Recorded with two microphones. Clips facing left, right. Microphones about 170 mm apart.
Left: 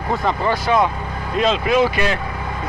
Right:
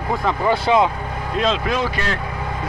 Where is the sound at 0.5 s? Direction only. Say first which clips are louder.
Right 2 dB; 20° right (ahead or behind).